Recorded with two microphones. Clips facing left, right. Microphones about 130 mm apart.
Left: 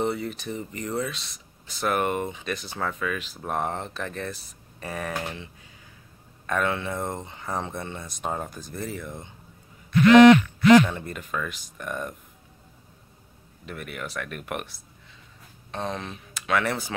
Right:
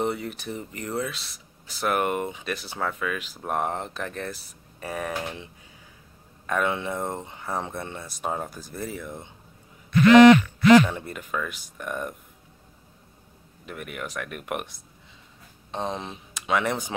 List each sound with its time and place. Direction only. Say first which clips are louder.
0.0 s speech: left 1 dB; 10° right (ahead or behind)
10.9 s speech: right 1 dB; 5° right (ahead or behind)
13.7 s speech: even; 10° right (ahead or behind)